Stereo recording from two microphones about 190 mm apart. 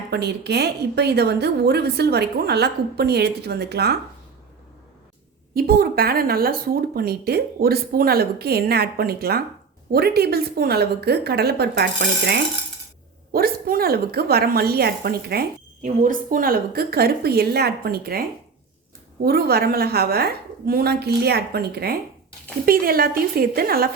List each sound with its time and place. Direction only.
0.1 s a woman's voice: 60° right (ahead or behind)
5.5 s a woman's voice: 50° right (ahead or behind)